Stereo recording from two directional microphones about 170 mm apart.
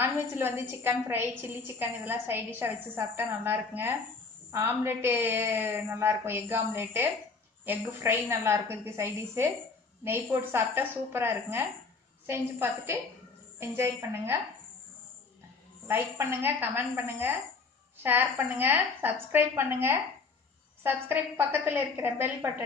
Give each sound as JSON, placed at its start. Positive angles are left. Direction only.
{"t": 0.0, "sound": "a woman's voice", "side_deg": -15}
{"t": 15.9, "sound": "a woman's voice", "side_deg": -10}